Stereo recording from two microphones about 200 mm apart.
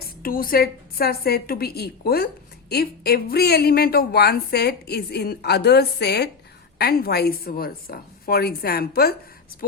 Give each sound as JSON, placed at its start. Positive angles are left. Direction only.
{"t": 0.2, "sound": "a woman's voice", "side_deg": 45}